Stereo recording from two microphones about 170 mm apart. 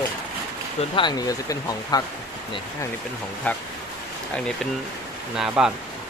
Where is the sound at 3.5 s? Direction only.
10° left (ahead or behind).